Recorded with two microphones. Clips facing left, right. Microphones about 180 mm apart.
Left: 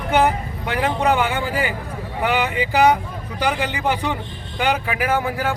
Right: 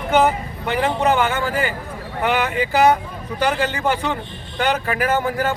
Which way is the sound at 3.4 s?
10° left (ahead or behind).